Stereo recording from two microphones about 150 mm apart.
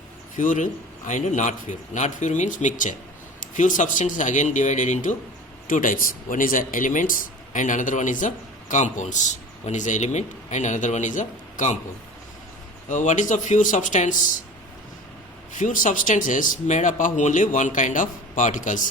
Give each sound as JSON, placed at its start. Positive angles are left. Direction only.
{"t": 0.3, "sound": "speech", "side_deg": 60}
{"t": 12.9, "sound": "speech", "side_deg": 55}
{"t": 15.5, "sound": "speech", "side_deg": 60}